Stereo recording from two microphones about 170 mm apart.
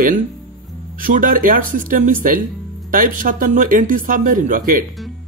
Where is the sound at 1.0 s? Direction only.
55° right (ahead or behind).